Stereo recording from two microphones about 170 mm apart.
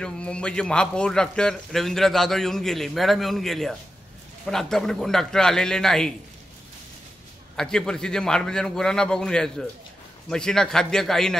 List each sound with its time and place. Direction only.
0.0 s a man's voice: 5° left (ahead or behind)
7.5 s a man's voice: 5° left (ahead or behind)